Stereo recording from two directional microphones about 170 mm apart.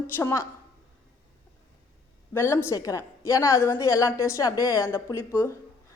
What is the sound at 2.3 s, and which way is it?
A woman's voice, 15° left (ahead or behind).